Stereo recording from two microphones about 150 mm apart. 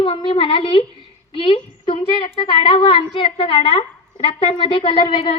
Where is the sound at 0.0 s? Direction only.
35° left (ahead or behind).